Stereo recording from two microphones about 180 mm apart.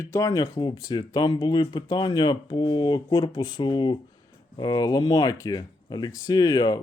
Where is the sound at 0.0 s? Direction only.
15° left (ahead or behind).